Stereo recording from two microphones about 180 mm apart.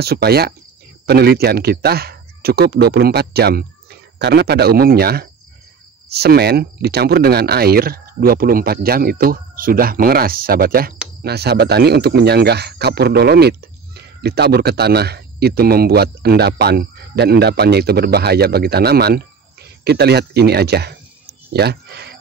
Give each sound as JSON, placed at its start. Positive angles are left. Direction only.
{"t": 0.0, "sound": "speech", "side_deg": -60}